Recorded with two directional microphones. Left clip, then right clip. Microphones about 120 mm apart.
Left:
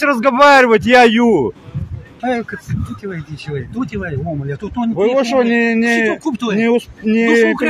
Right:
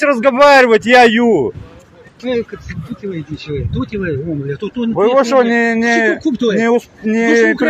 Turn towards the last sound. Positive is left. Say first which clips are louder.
# right 1 dB
turn(degrees=55)  # may be behind; listen again after turning